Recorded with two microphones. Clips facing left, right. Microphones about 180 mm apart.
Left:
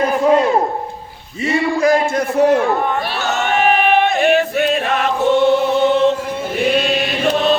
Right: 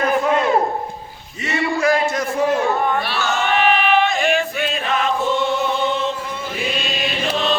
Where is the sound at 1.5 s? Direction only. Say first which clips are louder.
Left 4 dB; 35° left (ahead or behind).